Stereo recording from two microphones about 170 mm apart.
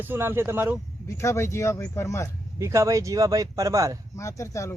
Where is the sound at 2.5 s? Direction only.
15° right (ahead or behind).